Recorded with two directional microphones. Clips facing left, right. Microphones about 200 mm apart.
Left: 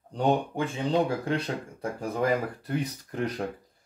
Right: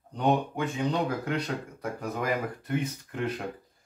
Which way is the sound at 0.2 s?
30° left (ahead or behind).